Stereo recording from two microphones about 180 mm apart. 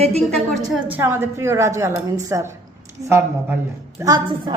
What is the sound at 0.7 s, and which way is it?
A woman's voice, 10° right (ahead or behind).